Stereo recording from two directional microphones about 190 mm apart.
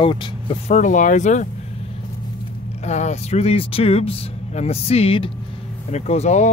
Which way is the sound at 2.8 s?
35° left (ahead or behind).